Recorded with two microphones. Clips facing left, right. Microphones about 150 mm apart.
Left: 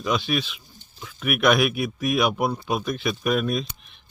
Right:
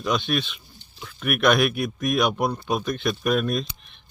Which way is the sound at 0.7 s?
45° left (ahead or behind).